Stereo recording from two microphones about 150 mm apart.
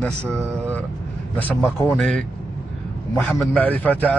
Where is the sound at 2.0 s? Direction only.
Centre (ahead or behind).